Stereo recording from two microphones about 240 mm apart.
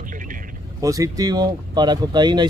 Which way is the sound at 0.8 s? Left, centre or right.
Centre.